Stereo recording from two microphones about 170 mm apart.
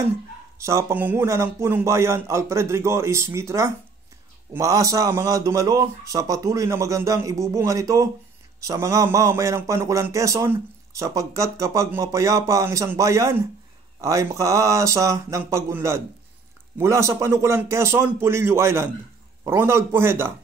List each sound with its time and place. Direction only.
0.6 s a man's voice: 15° right (ahead or behind)